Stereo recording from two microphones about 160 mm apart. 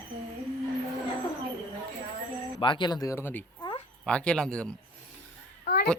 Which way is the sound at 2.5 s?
30° left (ahead or behind).